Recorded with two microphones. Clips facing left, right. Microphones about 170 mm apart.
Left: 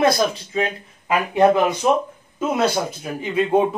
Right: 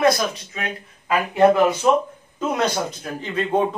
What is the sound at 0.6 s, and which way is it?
Speech, 20° left (ahead or behind).